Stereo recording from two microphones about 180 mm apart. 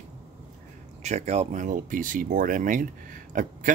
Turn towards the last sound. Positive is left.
turn(degrees=-45)  # may be behind; listen again after turning